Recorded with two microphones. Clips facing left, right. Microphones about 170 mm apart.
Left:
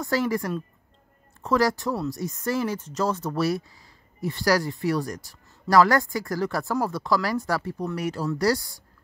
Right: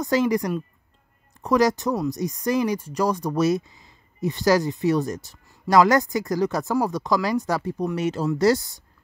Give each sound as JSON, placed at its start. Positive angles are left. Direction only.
{"t": 0.0, "sound": "speech", "side_deg": -20}